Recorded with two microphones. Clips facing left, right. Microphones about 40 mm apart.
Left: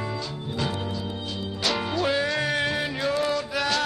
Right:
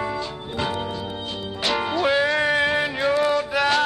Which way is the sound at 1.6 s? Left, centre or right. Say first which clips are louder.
Right 4 dB; centre.